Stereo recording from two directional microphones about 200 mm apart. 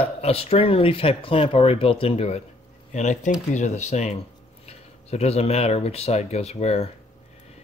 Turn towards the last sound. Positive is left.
turn(degrees=30)  # may be behind; listen again after turning